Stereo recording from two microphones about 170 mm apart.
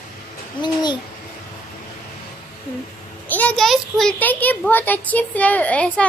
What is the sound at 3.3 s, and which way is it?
Speech, 10° left (ahead or behind).